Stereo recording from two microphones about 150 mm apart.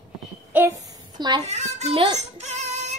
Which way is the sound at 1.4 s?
50° right (ahead or behind).